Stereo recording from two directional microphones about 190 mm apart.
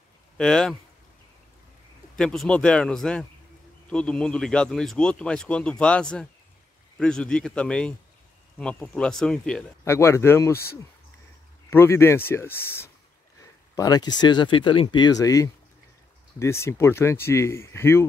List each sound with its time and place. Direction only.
0.4 s speech: 5° left (ahead or behind)
2.1 s speech: 5° left (ahead or behind)
9.8 s speech: 15° left (ahead or behind)